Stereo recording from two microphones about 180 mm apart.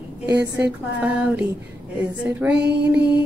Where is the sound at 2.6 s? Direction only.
70° right (ahead or behind).